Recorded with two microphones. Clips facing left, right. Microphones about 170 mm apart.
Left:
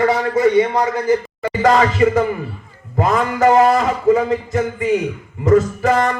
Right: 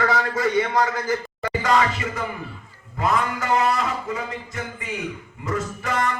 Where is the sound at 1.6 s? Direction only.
40° left (ahead or behind).